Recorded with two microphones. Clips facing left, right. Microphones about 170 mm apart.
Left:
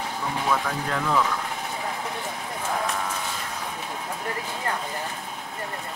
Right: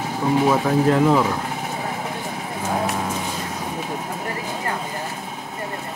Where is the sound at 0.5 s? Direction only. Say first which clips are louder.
Right 7 dB; 30° right (ahead or behind).